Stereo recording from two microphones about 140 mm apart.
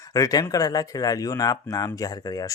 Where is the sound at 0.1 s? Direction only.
25° left (ahead or behind).